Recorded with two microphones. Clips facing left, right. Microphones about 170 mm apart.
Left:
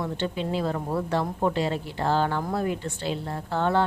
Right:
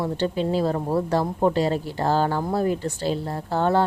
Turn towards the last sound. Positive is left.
turn(degrees=-40)  # may be behind; listen again after turning